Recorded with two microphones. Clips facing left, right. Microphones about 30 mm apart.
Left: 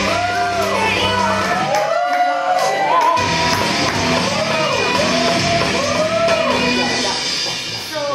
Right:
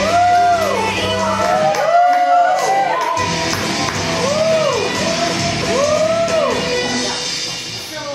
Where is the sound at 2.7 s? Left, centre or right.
Centre.